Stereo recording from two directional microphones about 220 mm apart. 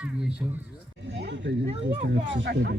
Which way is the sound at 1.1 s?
50° right (ahead or behind).